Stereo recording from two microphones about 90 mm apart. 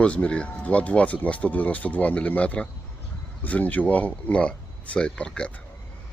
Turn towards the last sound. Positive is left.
turn(degrees=10)  # may be behind; listen again after turning